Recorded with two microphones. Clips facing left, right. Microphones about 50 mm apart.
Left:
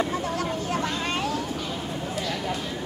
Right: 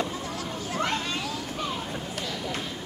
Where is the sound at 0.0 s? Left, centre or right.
Left.